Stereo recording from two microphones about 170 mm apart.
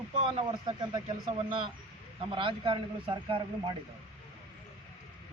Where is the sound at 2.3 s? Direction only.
30° right (ahead or behind).